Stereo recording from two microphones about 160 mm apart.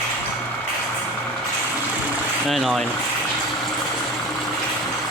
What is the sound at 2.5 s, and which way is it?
Speech, centre (ahead or behind).